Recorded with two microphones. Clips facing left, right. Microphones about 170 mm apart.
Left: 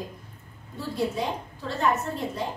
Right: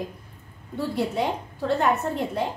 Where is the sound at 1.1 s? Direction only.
60° right (ahead or behind).